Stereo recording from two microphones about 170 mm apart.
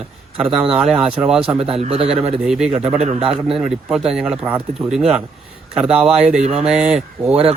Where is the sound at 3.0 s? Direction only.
40° right (ahead or behind).